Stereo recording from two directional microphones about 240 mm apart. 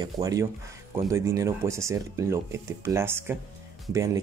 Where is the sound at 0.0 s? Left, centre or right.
Centre.